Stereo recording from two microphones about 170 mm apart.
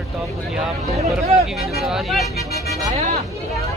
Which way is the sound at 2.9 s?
40° right (ahead or behind).